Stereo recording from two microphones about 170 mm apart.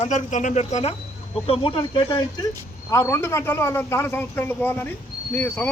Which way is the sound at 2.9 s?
15° left (ahead or behind).